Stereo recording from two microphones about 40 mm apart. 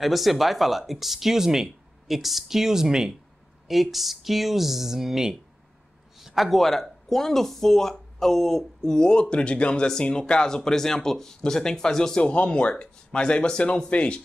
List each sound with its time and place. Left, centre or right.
0.0 s speech: centre
3.6 s speech: centre
12.2 s speech: left